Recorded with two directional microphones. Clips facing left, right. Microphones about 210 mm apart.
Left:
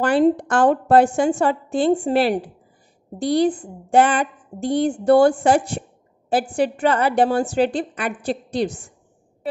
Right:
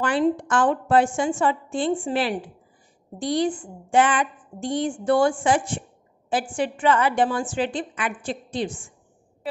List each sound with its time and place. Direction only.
0.0 s a woman's voice: 40° left (ahead or behind)
5.4 s a sound: 35° left (ahead or behind)
6.5 s a woman's voice: 35° left (ahead or behind)
8.6 s a woman's voice: 65° left (ahead or behind)